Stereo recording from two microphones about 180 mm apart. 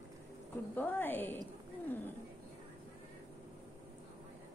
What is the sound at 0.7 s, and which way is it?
Speech, 10° left (ahead or behind).